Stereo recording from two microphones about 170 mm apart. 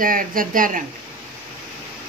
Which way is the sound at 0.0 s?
55° right (ahead or behind).